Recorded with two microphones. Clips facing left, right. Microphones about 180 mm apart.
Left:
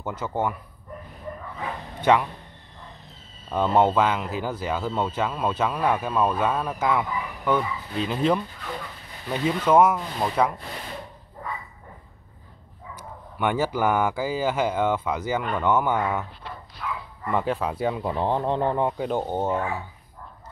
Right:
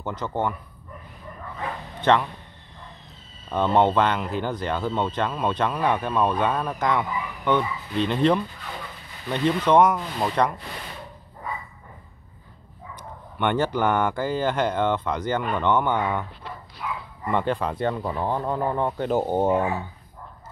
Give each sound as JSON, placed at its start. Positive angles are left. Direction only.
{"t": 0.0, "sound": "speech", "side_deg": 10}
{"t": 2.0, "sound": "speech", "side_deg": 10}
{"t": 3.4, "sound": "speech", "side_deg": 5}
{"t": 12.9, "sound": "speech", "side_deg": 5}
{"t": 16.8, "sound": "bow-wow", "side_deg": -10}
{"t": 17.3, "sound": "speech", "side_deg": 5}
{"t": 18.1, "sound": "speech", "side_deg": 20}
{"t": 18.9, "sound": "speech", "side_deg": 5}
{"t": 19.1, "sound": "speech", "side_deg": -10}